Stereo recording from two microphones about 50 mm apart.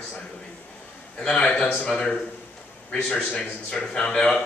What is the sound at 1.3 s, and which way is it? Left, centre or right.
Speech, centre.